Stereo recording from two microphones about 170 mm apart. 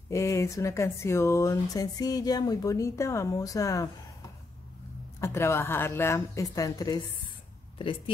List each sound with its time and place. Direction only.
0.1 s speech: 15° left (ahead or behind)
5.2 s a woman's voice: 15° left (ahead or behind)